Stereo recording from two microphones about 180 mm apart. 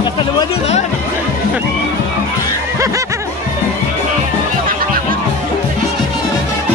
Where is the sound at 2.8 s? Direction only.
15° right (ahead or behind).